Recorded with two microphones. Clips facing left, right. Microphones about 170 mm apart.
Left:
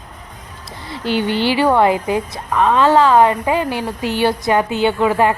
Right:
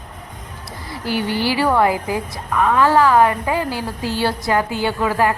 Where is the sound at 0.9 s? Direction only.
25° left (ahead or behind).